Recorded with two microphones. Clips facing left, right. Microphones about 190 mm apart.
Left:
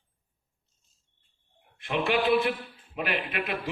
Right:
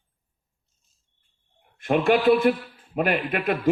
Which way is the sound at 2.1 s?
45° right (ahead or behind).